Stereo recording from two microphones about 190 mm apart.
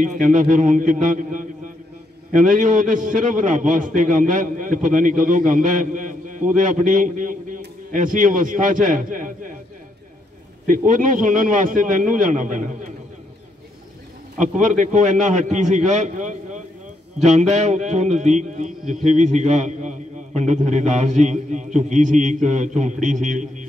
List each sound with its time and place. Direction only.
0.0 s a man's voice: 40° right (ahead or behind)
10.7 s a man's voice: 40° right (ahead or behind)
14.4 s a man's voice: 40° right (ahead or behind)